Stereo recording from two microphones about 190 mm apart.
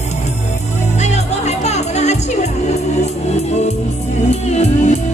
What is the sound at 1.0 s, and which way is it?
Music, 35° left (ahead or behind).